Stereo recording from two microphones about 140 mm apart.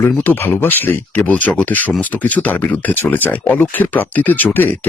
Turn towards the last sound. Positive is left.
turn(degrees=15)  # may be behind; listen again after turning